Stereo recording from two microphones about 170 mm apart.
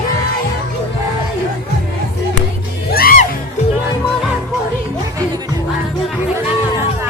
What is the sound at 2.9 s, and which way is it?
Music, 60° left (ahead or behind).